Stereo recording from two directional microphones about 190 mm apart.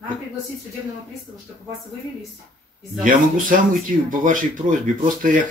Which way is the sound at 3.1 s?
45° right (ahead or behind).